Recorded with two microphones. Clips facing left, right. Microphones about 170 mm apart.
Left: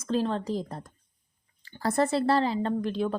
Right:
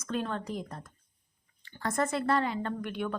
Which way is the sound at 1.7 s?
35° left (ahead or behind).